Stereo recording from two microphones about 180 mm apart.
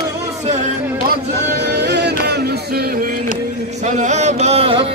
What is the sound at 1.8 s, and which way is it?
Music, 70° right (ahead or behind).